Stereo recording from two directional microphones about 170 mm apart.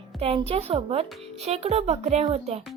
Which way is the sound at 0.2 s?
35° right (ahead or behind).